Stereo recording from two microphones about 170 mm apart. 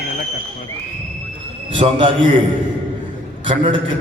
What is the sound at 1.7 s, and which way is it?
Speech, 30° right (ahead or behind).